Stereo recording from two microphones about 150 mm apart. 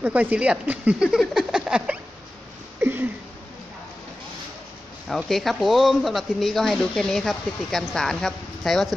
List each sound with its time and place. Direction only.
0.0 s speech: 10° right (ahead or behind)
2.8 s a sound: 15° right (ahead or behind)
5.0 s speech: centre (ahead or behind)